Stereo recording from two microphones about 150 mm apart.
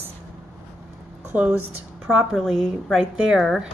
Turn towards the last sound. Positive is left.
turn(degrees=0)  # may be behind; listen again after turning